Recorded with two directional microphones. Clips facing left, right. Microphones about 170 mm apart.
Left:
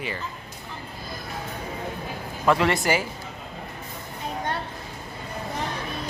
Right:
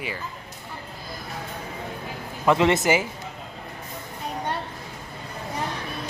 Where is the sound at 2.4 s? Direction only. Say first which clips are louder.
Right 2 dB; 20° right (ahead or behind).